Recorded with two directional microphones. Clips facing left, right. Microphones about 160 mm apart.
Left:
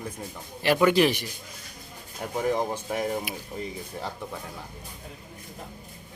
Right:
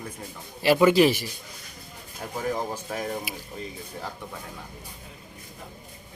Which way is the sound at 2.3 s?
20° left (ahead or behind).